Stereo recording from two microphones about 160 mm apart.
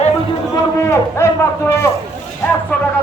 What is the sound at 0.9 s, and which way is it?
Speech, 15° left (ahead or behind).